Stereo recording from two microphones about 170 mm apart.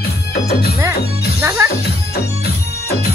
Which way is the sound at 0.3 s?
65° left (ahead or behind).